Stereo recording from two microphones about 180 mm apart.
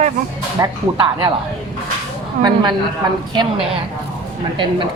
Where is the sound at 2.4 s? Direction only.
25° right (ahead or behind).